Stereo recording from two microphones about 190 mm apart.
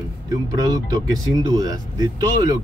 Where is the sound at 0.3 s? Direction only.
20° right (ahead or behind).